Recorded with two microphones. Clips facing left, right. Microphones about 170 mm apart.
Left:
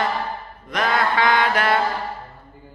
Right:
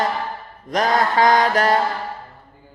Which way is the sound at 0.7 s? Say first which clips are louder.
Right 3 dB; 40° right (ahead or behind).